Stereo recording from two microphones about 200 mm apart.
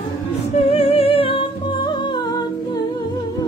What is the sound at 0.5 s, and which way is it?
Music, 30° left (ahead or behind).